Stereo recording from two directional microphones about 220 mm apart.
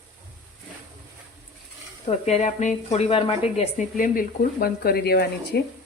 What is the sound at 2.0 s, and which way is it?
Speech, 30° left (ahead or behind).